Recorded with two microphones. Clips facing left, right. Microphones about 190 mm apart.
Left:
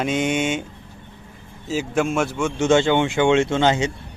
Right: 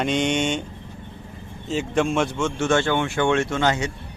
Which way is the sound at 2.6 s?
20° left (ahead or behind).